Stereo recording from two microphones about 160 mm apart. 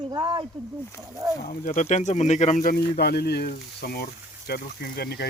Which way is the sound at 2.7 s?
80° left.